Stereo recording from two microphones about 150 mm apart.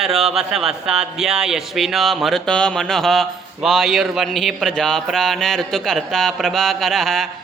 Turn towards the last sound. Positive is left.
turn(degrees=0)  # may be behind; listen again after turning